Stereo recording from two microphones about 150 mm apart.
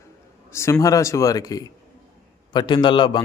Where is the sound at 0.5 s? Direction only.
20° left (ahead or behind).